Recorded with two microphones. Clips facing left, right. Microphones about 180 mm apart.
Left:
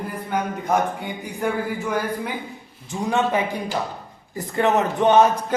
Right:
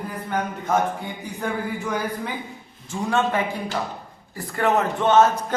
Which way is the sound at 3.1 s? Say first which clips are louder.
Left 1 dB; 15° left (ahead or behind).